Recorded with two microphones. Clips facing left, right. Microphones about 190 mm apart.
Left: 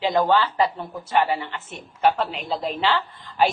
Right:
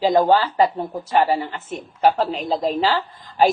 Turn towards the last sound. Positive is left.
turn(degrees=-35)  # may be behind; listen again after turning